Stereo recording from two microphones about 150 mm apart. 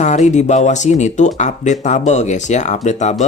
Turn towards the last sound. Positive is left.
turn(degrees=50)  # may be behind; listen again after turning